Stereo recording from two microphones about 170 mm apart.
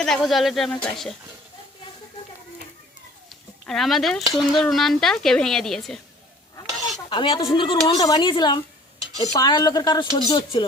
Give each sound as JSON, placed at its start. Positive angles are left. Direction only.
{"t": 0.0, "sound": "speech", "side_deg": 0}
{"t": 3.7, "sound": "speech", "side_deg": 0}
{"t": 7.1, "sound": "speech", "side_deg": 30}